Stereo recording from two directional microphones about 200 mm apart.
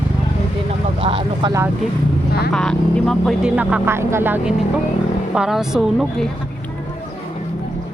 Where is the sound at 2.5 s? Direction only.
5° left (ahead or behind).